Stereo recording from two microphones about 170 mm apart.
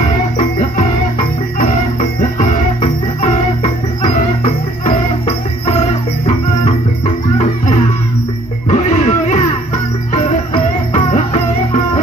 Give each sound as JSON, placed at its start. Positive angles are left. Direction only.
{"t": 0.4, "sound": "music", "side_deg": 50}
{"t": 7.3, "sound": "music", "side_deg": 45}